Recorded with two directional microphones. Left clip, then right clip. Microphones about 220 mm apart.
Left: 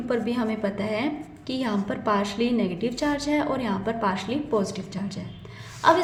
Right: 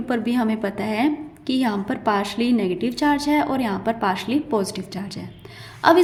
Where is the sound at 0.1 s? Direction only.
30° right (ahead or behind).